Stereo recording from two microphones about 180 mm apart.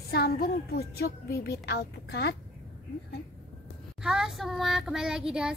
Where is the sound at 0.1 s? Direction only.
55° left (ahead or behind).